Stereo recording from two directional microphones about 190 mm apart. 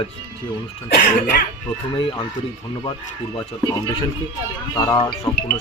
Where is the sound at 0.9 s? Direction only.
55° left (ahead or behind).